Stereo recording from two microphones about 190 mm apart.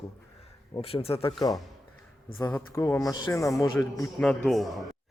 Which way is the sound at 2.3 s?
10° left (ahead or behind).